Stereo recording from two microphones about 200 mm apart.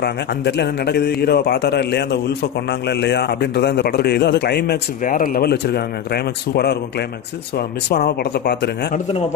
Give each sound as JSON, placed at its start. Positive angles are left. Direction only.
{"t": 0.0, "sound": "a man's voice", "side_deg": 60}